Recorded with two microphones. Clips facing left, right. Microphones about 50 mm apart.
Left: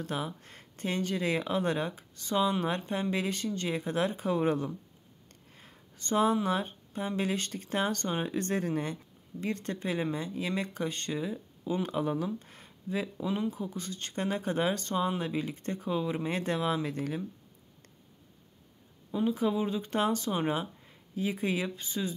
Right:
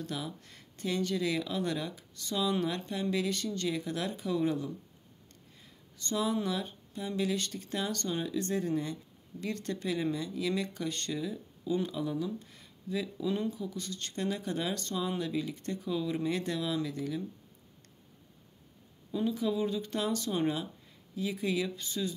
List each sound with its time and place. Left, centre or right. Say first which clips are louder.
0.0 s speech: left 3 dB; left
5.5 s a sound: left 5 dB; left
6.0 s speech: left 5 dB; left
9.4 s speech: left 2 dB; left
11.8 s speech: left 3 dB; left
13.3 s speech: even; centre
13.6 s speech: left 1 dB; left
19.3 s speech: left 2 dB; left